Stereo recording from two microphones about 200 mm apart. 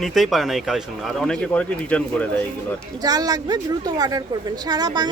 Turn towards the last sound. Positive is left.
turn(degrees=-20)  # may be behind; listen again after turning